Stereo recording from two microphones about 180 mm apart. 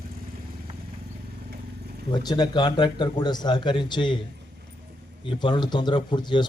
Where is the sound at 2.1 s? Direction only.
25° left (ahead or behind).